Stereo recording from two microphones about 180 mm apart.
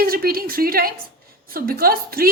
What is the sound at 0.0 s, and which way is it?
A woman's voice, 55° right (ahead or behind).